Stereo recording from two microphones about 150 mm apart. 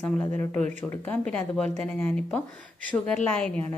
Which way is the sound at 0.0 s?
15° left (ahead or behind).